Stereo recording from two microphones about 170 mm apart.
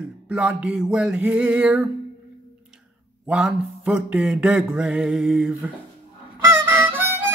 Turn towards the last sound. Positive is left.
turn(degrees=-10)  # may be behind; listen again after turning